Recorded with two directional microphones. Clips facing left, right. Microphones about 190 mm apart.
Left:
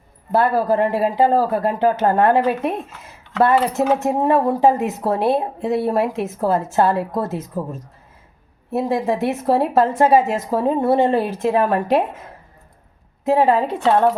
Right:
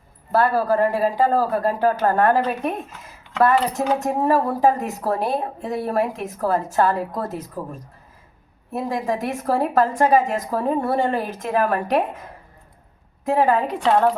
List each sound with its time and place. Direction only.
0.3 s speech: 20° left (ahead or behind)
13.2 s speech: 25° left (ahead or behind)